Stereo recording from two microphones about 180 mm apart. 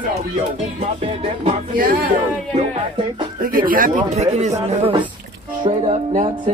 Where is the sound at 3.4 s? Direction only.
50° right (ahead or behind).